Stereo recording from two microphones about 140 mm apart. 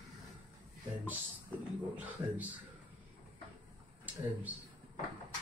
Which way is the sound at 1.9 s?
10° right (ahead or behind).